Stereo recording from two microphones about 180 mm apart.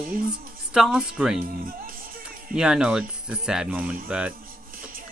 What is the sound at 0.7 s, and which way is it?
Speech, centre (ahead or behind).